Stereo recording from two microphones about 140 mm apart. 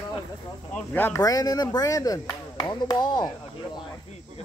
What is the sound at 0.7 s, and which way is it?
Speech, 15° left (ahead or behind).